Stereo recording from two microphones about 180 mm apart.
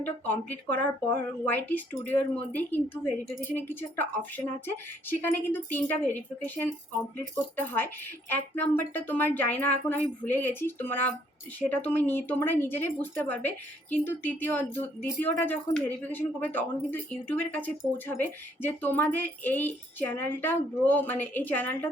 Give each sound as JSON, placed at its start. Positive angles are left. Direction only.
{"t": 0.0, "sound": "speech", "side_deg": 10}